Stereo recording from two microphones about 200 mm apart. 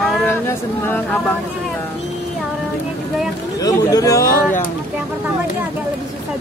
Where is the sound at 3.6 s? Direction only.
20° left (ahead or behind).